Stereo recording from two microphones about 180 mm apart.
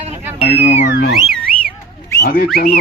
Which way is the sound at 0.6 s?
35° left (ahead or behind).